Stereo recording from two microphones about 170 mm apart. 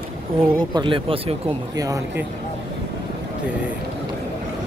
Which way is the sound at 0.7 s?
30° right (ahead or behind).